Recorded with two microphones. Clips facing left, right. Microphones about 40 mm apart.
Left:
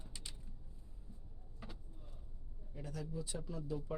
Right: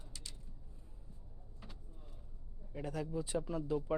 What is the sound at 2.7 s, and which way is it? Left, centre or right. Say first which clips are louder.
Speech: right 6 dB; right.